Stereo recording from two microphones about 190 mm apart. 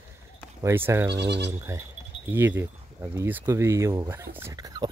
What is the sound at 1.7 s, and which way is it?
Speech, 15° right (ahead or behind).